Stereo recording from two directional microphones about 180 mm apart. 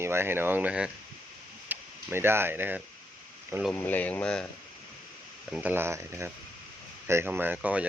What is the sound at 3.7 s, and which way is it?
Speech, 10° left (ahead or behind).